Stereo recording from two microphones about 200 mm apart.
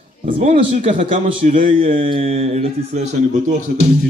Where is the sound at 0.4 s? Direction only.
30° right (ahead or behind).